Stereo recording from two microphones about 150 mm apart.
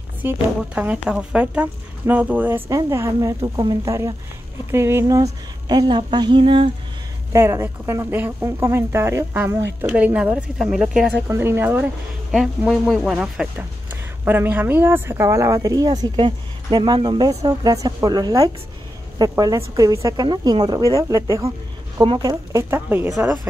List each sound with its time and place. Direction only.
0.2 s speech: 15° right (ahead or behind)
5.7 s speech: 30° right (ahead or behind)
6.1 s a sound: 30° right (ahead or behind)
7.3 s speech: 20° right (ahead or behind)
23.1 s speech: 5° right (ahead or behind)